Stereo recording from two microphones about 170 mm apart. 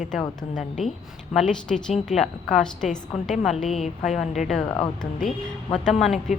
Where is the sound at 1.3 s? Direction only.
5° left (ahead or behind).